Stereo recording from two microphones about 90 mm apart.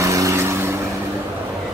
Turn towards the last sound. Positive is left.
turn(degrees=-30)  # may be behind; listen again after turning